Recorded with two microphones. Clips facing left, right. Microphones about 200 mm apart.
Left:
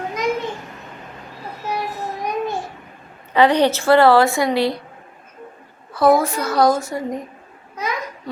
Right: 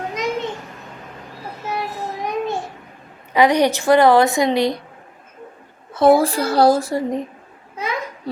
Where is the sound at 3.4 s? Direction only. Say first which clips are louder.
Even; 15° right (ahead or behind).